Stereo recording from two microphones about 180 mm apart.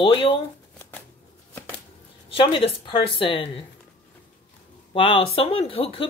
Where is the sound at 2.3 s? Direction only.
30° left (ahead or behind).